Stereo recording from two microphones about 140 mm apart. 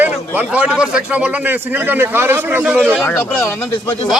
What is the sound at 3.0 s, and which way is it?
Speech, 15° left (ahead or behind).